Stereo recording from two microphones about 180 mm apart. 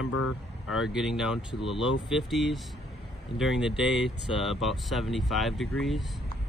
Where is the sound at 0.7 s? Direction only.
5° right (ahead or behind).